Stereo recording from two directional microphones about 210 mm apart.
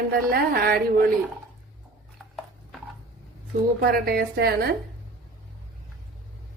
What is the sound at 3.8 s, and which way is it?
Speech, 45° right (ahead or behind).